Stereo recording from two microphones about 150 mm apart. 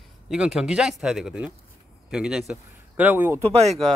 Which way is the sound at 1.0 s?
5° right (ahead or behind).